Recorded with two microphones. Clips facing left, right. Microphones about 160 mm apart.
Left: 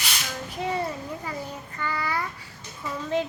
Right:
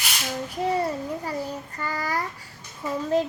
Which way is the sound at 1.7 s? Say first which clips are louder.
Even; 40° right (ahead or behind).